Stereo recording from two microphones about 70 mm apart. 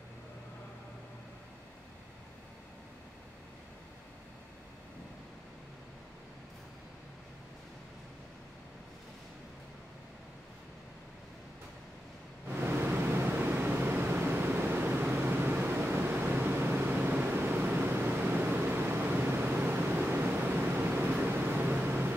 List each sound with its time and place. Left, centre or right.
12.5 s vehicle: right